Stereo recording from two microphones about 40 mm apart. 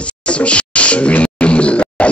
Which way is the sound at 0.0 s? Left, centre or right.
Left.